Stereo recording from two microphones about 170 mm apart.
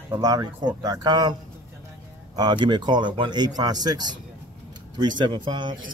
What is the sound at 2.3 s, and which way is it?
Speech, 25° right (ahead or behind).